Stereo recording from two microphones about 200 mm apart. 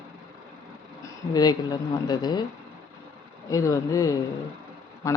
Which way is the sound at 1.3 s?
20° left (ahead or behind).